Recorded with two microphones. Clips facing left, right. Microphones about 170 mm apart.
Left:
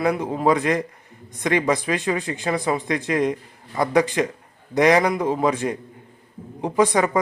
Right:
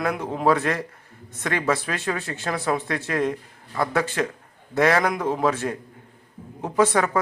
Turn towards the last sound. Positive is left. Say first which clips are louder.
# left 2 dB
turn(degrees=15)  # may be behind; listen again after turning